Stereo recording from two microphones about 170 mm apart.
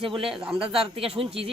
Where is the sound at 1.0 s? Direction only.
35° right (ahead or behind).